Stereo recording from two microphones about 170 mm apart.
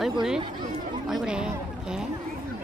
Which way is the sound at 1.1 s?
5° right (ahead or behind).